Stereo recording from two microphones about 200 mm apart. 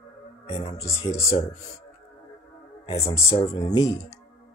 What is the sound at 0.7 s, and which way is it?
Speech, 15° left (ahead or behind).